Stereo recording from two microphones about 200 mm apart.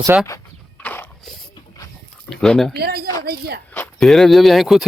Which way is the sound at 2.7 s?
50° right (ahead or behind).